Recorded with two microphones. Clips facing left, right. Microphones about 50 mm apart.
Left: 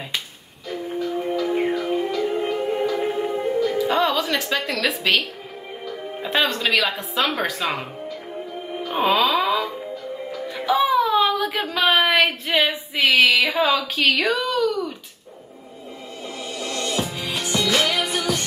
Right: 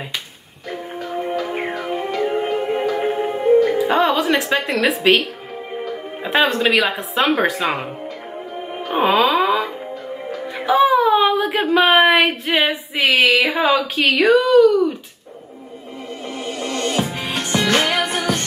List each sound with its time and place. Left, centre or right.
0.7 s music: right
3.7 s music: right
4.1 s a woman's voice: right
6.2 s speech: right
8.9 s music: right
10.8 s whimper: right
13.3 s speech: right
16.3 s music: right